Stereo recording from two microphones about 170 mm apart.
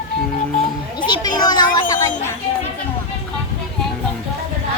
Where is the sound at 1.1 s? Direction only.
25° left (ahead or behind).